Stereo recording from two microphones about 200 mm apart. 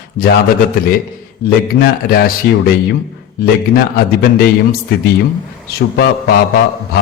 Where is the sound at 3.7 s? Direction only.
50° left (ahead or behind).